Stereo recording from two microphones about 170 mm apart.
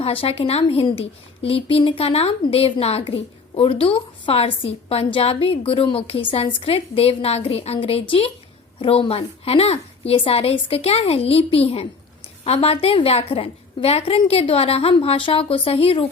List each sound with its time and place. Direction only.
0.0 s a woman's voice: 35° left (ahead or behind)